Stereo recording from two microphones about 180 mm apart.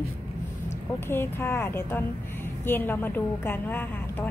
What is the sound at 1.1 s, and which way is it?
A woman's voice, 10° left (ahead or behind).